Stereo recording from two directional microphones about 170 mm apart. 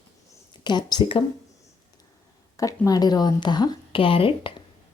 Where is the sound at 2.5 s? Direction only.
20° left (ahead or behind).